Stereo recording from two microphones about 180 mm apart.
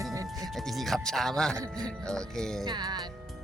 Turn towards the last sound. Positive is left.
turn(degrees=-25)  # may be behind; listen again after turning